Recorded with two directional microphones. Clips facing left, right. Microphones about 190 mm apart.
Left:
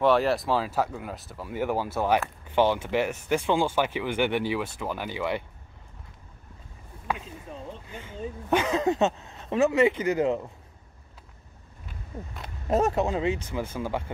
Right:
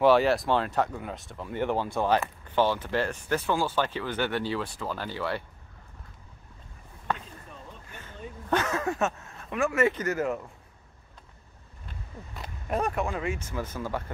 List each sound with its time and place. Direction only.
0.0 s speech: centre (ahead or behind); by 5.4 s 15° left (ahead or behind)
7.1 s a sound: 10° left (ahead or behind)
7.9 s dog: 15° left (ahead or behind)
8.5 s speech: 15° left (ahead or behind)
12.6 s speech: 25° left (ahead or behind)